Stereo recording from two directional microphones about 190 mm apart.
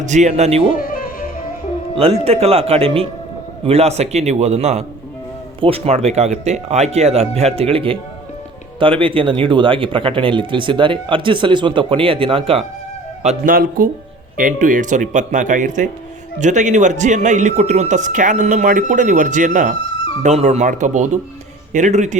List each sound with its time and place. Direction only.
0.0 s speech: 40° right (ahead or behind)
2.0 s speech: 30° right (ahead or behind)
13.2 s speech: 45° right (ahead or behind)